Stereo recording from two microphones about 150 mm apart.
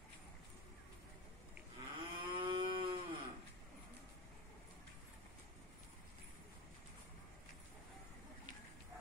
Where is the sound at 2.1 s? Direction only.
35° right (ahead or behind).